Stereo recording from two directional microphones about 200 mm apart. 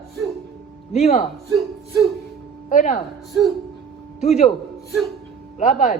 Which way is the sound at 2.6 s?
35° left (ahead or behind).